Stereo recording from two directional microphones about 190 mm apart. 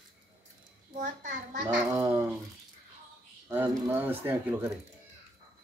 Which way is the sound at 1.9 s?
15° right (ahead or behind).